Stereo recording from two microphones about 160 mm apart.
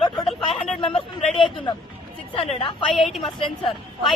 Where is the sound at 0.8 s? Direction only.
35° left (ahead or behind).